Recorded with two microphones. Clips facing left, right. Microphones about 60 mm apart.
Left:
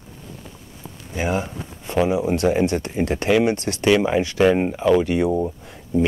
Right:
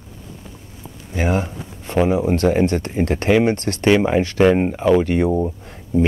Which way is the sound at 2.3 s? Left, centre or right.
Right.